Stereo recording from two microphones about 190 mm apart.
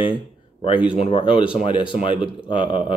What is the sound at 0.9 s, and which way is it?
Speech, 30° left (ahead or behind).